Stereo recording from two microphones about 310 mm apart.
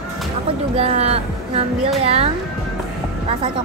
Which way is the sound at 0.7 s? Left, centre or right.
Centre.